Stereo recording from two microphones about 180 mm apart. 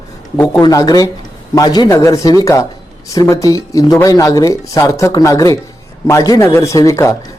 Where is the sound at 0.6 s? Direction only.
20° left (ahead or behind).